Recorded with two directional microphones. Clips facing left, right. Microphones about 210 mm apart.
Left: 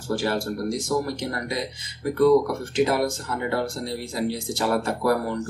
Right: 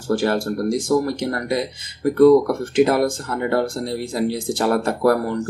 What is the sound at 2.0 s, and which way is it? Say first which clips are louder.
Speech: right 6 dB; 55° right (ahead or behind).